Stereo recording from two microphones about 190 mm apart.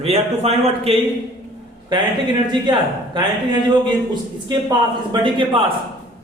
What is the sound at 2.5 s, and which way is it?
Speech, 25° right (ahead or behind).